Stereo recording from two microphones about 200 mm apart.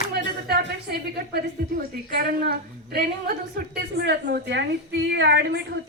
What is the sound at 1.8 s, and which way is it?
A woman's voice, 50° right (ahead or behind).